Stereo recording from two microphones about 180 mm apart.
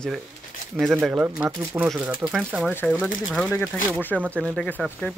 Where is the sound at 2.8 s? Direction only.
5° left (ahead or behind).